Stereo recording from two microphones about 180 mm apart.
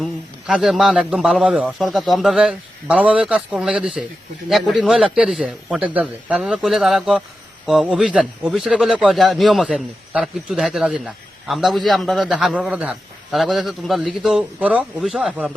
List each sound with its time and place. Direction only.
0.0 s a man's voice: 5° right (ahead or behind)